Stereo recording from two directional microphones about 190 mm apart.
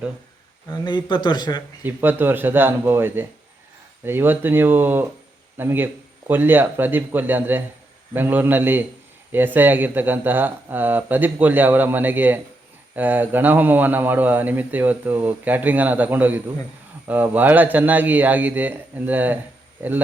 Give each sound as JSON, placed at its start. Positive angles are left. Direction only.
{"t": 0.7, "sound": "a man's voice", "side_deg": 25}
{"t": 1.8, "sound": "a man's voice", "side_deg": -10}